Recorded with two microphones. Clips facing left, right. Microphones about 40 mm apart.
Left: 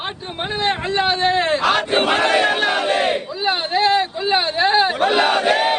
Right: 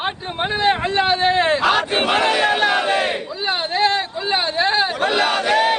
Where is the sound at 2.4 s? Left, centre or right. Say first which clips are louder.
Right 1 dB; centre.